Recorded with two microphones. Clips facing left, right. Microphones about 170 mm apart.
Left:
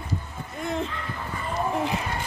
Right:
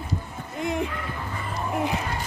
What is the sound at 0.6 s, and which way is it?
Speech, 15° right (ahead or behind).